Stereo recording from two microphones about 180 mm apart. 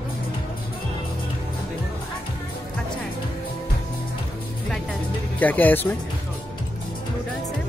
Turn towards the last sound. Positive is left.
turn(degrees=10)  # may be behind; listen again after turning